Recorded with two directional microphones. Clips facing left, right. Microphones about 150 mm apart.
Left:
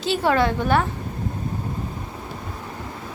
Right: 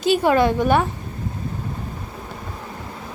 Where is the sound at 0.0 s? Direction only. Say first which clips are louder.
Right 3 dB; 15° right (ahead or behind).